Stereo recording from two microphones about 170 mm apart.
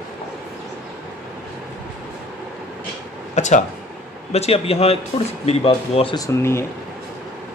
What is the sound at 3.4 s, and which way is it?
Speech, 45° left (ahead or behind).